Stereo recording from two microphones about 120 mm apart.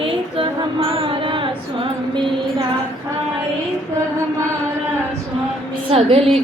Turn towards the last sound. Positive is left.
turn(degrees=-55)  # may be behind; listen again after turning